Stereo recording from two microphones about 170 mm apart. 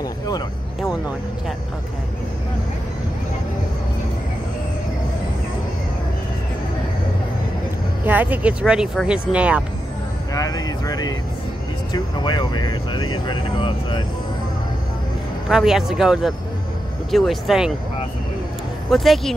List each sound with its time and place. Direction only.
8.0 s speech: 10° right (ahead or behind)
10.3 s speech: 20° left (ahead or behind)
15.4 s speech: 5° right (ahead or behind)
18.9 s speech: centre (ahead or behind)